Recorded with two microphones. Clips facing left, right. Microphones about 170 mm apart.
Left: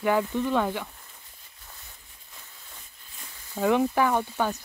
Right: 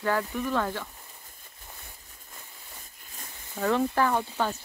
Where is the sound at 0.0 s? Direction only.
15° left (ahead or behind).